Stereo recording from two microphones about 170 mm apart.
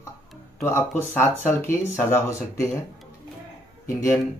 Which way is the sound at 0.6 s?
15° left (ahead or behind).